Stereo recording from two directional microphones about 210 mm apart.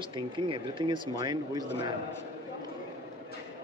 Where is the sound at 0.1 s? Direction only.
25° right (ahead or behind).